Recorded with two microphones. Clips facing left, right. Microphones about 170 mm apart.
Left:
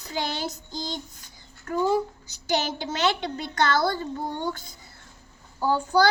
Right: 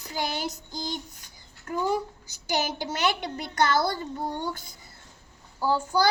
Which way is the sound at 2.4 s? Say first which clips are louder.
Left 2 dB; 10° right (ahead or behind).